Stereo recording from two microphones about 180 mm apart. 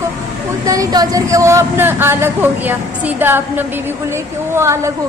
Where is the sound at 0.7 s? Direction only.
20° right (ahead or behind).